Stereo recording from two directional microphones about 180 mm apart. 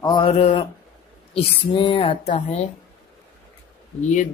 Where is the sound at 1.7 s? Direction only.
25° left (ahead or behind).